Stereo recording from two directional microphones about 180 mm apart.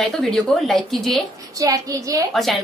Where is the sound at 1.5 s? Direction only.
20° right (ahead or behind).